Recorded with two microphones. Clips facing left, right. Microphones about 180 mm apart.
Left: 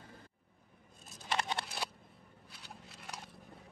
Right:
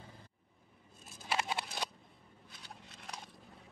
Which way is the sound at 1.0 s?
5° right (ahead or behind).